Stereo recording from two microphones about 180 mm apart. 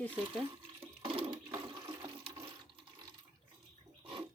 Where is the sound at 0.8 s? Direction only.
30° right (ahead or behind).